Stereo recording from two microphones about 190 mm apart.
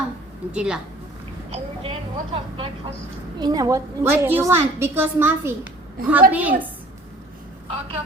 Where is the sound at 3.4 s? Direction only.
20° right (ahead or behind).